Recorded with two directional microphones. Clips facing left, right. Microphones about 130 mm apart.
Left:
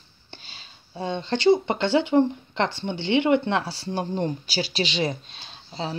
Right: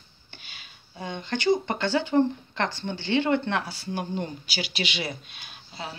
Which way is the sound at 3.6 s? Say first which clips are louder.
Left 3 dB; 35° left (ahead or behind).